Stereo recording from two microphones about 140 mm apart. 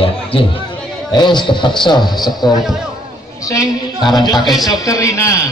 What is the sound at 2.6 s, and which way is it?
Speech, centre (ahead or behind).